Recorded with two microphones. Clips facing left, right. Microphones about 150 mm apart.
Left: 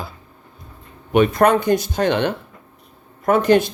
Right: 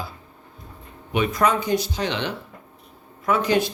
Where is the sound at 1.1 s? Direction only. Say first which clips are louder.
Left 7 dB; 55° left (ahead or behind).